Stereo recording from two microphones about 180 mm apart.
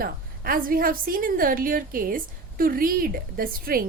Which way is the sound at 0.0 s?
55° right (ahead or behind).